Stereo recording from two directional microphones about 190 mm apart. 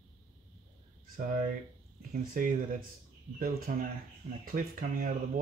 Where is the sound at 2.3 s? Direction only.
45° right (ahead or behind).